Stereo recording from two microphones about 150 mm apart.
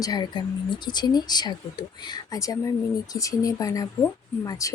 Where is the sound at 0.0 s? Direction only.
25° left (ahead or behind).